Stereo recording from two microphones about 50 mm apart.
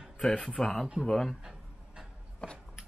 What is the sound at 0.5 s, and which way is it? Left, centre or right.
Speech, centre.